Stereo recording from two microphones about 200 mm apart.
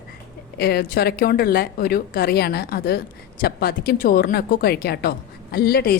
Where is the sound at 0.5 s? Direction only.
50° left (ahead or behind).